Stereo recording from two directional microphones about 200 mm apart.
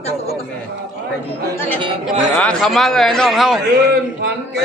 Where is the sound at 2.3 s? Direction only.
5° left (ahead or behind).